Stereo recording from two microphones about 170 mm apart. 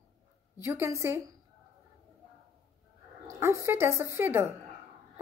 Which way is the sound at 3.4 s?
15° right (ahead or behind).